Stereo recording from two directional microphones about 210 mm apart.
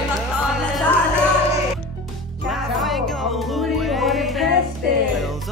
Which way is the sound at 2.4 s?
Centre (ahead or behind).